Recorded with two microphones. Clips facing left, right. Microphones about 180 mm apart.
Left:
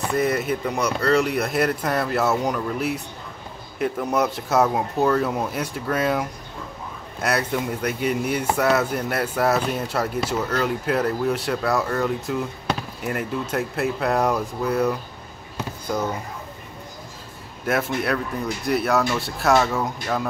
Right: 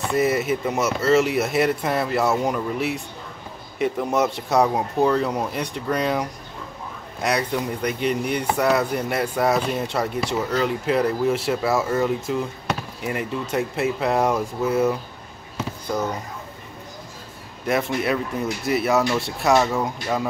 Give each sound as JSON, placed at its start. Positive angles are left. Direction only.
{"t": 0.1, "sound": "speech", "side_deg": 0}
{"t": 17.6, "sound": "speech", "side_deg": 0}